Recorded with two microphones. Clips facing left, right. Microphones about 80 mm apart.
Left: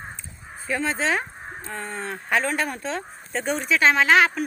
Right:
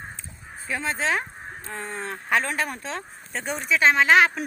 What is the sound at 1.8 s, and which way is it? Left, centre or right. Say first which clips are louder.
Speech: even; left.